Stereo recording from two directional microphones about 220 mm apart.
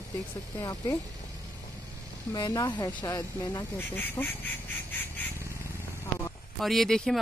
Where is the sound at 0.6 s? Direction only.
15° left (ahead or behind).